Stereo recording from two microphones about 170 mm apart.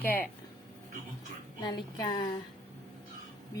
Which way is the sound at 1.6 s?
25° left (ahead or behind).